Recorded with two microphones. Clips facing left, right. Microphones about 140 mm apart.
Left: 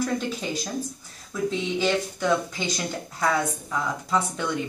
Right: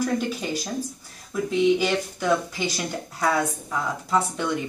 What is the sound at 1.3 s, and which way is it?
Speech, 10° right (ahead or behind).